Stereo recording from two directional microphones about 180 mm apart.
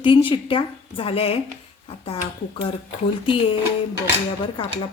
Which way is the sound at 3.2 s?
30° left (ahead or behind).